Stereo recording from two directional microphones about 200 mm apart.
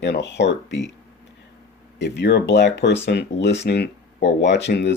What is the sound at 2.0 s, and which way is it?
Speech, 60° left (ahead or behind).